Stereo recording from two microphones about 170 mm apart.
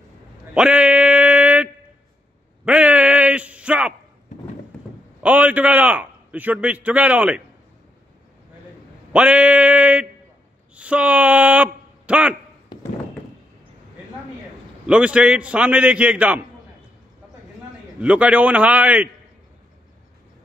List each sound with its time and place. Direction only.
0.6 s a sound: 5° right (ahead or behind)
5.2 s a man's voice: 10° right (ahead or behind)
9.1 s a man's voice: 10° right (ahead or behind)
12.7 s a sound: 25° left (ahead or behind)
14.9 s a man's voice: 5° right (ahead or behind)
18.0 s a man's voice: 10° right (ahead or behind)